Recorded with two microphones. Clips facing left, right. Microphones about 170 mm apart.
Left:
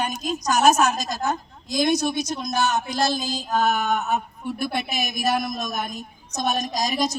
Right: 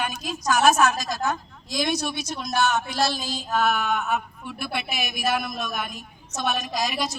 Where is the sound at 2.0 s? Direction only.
40° left (ahead or behind).